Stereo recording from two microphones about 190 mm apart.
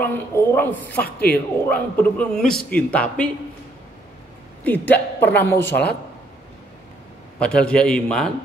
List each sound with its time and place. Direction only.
0.0 s a man's voice: 10° left (ahead or behind)
1.0 s speech: 55° left (ahead or behind)
1.7 s a man's voice: 5° left (ahead or behind)
4.6 s a man's voice: 10° left (ahead or behind)
7.3 s a man's voice: 5° left (ahead or behind)